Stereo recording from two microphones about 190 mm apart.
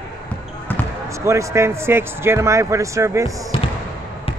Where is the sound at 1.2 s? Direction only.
15° right (ahead or behind).